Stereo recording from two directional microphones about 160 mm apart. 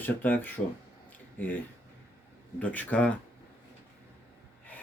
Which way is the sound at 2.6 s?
10° left (ahead or behind).